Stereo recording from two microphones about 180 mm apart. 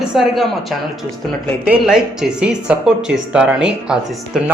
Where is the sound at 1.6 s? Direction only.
5° right (ahead or behind).